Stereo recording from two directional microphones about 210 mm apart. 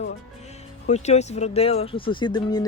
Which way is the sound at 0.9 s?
30° left (ahead or behind).